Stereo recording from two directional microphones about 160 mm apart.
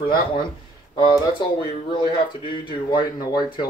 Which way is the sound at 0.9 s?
30° left (ahead or behind).